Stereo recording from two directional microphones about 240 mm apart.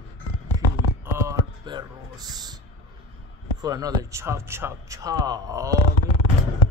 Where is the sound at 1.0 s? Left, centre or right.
Centre.